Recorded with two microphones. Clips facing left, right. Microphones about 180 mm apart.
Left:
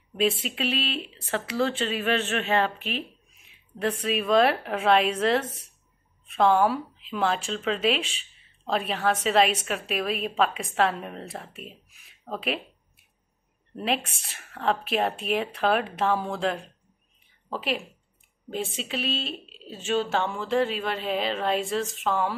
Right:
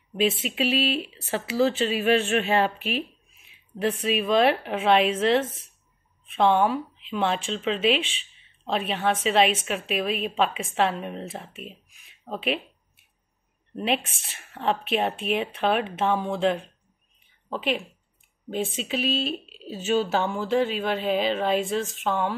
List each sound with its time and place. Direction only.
0.3 s speech: 30° left (ahead or behind)
0.6 s speech: 5° right (ahead or behind)
4.0 s speech: centre (ahead or behind)
12.3 s a sound: centre (ahead or behind)
13.7 s speech: centre (ahead or behind)